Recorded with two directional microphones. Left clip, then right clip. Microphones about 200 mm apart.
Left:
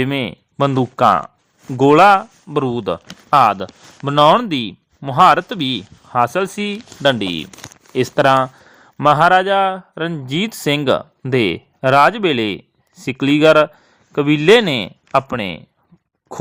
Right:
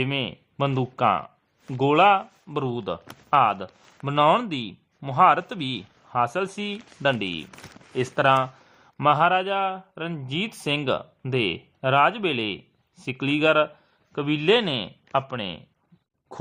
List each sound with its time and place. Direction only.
0.8 s speech: 35° left (ahead or behind)